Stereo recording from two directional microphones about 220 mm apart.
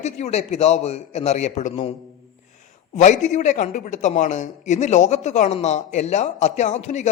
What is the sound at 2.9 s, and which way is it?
Speech, 35° left (ahead or behind).